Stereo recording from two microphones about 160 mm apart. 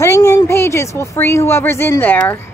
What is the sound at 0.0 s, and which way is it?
A woman's voice, 15° left (ahead or behind).